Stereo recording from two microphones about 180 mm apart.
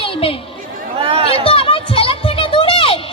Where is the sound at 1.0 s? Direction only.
35° right (ahead or behind).